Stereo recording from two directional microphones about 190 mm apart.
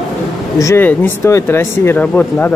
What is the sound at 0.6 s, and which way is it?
Speech, 15° left (ahead or behind).